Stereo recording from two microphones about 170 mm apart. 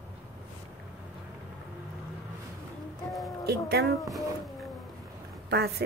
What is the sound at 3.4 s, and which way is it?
Speech, 70° right (ahead or behind).